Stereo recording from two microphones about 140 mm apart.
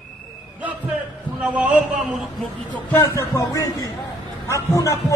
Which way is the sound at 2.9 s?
20° left (ahead or behind).